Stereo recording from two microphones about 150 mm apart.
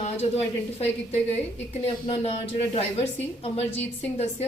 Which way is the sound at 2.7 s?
40° left (ahead or behind).